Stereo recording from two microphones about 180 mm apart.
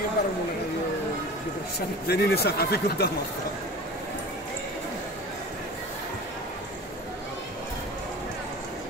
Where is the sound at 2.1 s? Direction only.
60° left (ahead or behind).